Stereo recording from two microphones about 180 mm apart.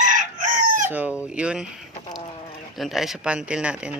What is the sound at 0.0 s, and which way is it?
Chicken, 45° right (ahead or behind).